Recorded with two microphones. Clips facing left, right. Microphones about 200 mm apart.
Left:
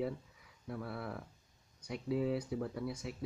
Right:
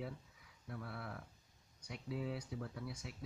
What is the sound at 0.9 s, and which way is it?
Speech, 40° left (ahead or behind).